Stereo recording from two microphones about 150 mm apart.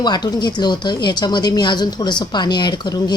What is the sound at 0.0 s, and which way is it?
A woman's voice, 30° left (ahead or behind).